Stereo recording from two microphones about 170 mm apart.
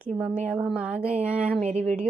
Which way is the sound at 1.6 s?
40° right (ahead or behind).